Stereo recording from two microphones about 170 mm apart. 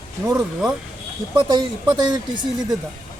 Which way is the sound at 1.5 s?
20° right (ahead or behind).